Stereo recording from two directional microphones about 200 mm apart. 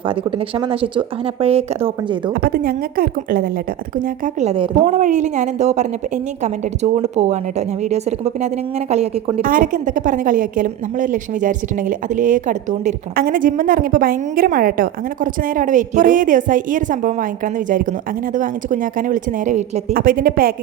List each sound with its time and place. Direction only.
0.0 s speech: 25° right (ahead or behind)
2.3 s a woman's voice: 45° right (ahead or behind); by 9.3 s 30° right (ahead or behind)
9.4 s a woman's voice: 45° right (ahead or behind)